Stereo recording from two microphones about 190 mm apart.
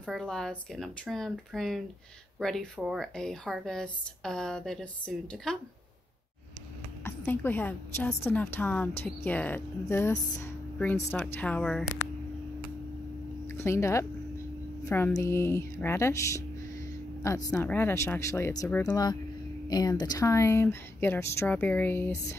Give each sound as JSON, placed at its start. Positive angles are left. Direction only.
{"t": 0.0, "sound": "speech", "side_deg": 0}
{"t": 7.1, "sound": "a woman's voice", "side_deg": 10}
{"t": 13.5, "sound": "a woman's voice", "side_deg": 15}